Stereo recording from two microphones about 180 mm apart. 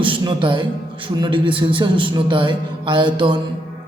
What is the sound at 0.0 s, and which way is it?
A man's voice, 25° right (ahead or behind).